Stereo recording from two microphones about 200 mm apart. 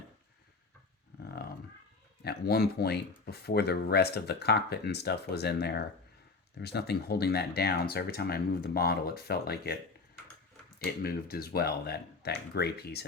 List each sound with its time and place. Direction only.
1.2 s roaring cats: 50° left (ahead or behind)
2.2 s speech: 55° left (ahead or behind)
10.8 s speech: 50° left (ahead or behind)